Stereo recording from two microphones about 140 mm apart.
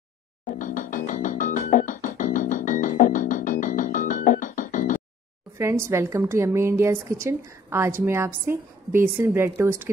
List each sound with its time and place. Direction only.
0.5 s music: 70° left (ahead or behind)
5.6 s a woman's voice: 20° right (ahead or behind)